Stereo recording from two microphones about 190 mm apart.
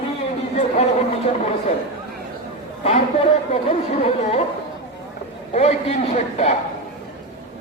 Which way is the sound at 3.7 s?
30° left (ahead or behind).